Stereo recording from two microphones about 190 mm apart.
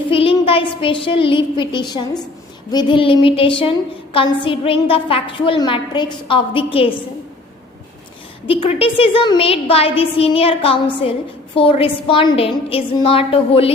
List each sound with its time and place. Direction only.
0.1 s a woman's voice: 30° left (ahead or behind)
8.4 s a woman's voice: 30° left (ahead or behind)